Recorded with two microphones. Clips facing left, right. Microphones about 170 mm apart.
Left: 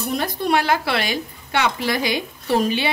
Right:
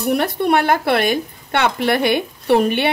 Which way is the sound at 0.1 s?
65° right (ahead or behind).